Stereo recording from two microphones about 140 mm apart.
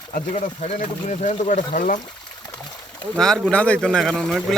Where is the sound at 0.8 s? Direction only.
60° left (ahead or behind).